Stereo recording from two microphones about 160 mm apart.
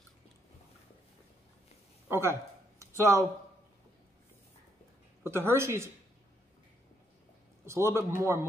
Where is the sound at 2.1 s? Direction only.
15° right (ahead or behind).